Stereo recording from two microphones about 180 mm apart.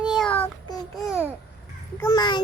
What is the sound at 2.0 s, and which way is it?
Speech, 20° left (ahead or behind).